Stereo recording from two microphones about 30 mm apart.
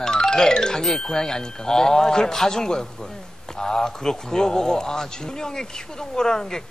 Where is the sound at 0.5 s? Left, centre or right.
Left.